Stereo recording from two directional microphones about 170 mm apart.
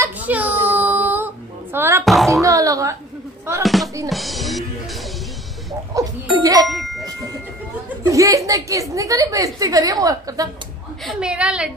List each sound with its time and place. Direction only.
0.0 s a sound: 10° right (ahead or behind)
2.0 s a woman's voice: centre (ahead or behind)
2.4 s a sound: 20° right (ahead or behind)
3.6 s music: centre (ahead or behind)
5.9 s ding-dong: 20° right (ahead or behind)
6.3 s music: 20° right (ahead or behind)
6.7 s a sound: centre (ahead or behind)
8.1 s a woman's voice: 20° right (ahead or behind)
11.1 s a woman's voice: 5° right (ahead or behind)